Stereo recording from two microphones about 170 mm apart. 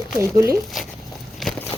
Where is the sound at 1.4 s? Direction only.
Centre (ahead or behind).